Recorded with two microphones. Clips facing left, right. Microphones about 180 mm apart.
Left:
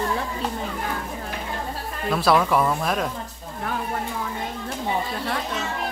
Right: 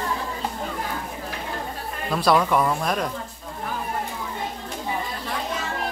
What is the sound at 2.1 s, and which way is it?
Speech, centre (ahead or behind).